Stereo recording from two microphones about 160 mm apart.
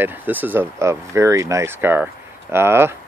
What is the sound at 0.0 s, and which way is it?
Speech, 10° right (ahead or behind).